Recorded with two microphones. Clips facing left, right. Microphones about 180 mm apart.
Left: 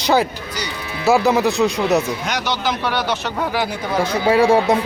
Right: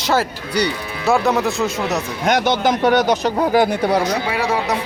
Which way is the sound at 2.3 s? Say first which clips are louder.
Right 6 dB; 50° right (ahead or behind).